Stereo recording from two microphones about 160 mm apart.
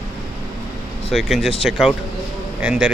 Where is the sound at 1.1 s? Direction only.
Centre (ahead or behind).